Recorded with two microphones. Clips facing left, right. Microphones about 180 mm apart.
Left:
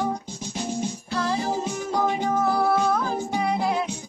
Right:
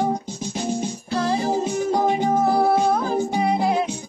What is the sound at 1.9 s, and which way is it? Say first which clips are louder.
Music: right 3 dB; 25° right (ahead or behind).